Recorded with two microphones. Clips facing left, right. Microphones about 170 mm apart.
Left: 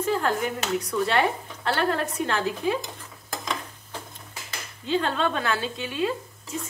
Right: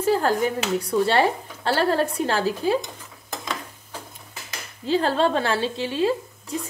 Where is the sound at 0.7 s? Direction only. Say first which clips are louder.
Right 3 dB; 30° right (ahead or behind).